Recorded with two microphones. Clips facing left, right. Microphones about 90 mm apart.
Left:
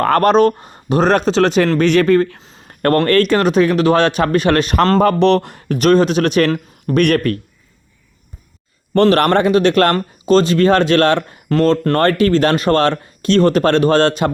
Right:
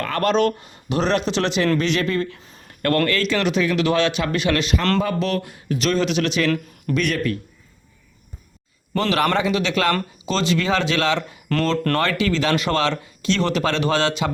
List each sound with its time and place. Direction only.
0.0 s speech: 45° left (ahead or behind)
2.6 s a sound: 45° left (ahead or behind)
3.1 s speech: 50° left (ahead or behind)
4.9 s speech: 60° left (ahead or behind)
9.0 s speech: 55° left (ahead or behind)